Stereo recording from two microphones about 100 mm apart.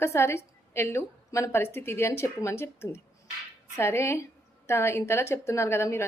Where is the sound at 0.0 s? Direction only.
25° left (ahead or behind).